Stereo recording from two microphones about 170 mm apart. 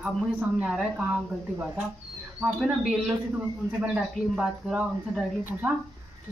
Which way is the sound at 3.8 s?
5° right (ahead or behind).